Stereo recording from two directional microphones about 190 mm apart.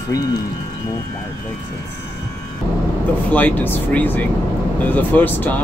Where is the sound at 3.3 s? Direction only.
10° left (ahead or behind).